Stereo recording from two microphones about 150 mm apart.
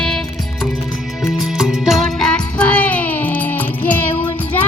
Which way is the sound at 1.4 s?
5° right (ahead or behind).